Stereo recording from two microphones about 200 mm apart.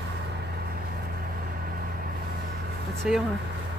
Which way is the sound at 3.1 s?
5° right (ahead or behind).